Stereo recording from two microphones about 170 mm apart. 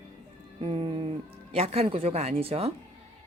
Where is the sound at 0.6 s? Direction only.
35° right (ahead or behind).